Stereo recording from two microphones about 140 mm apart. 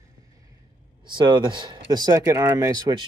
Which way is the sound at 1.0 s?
35° right (ahead or behind).